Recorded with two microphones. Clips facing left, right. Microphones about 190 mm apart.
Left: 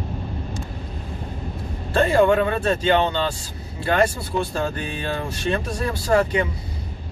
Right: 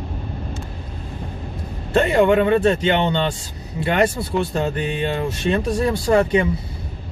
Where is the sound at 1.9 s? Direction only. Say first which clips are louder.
Right 1 dB; 20° right (ahead or behind).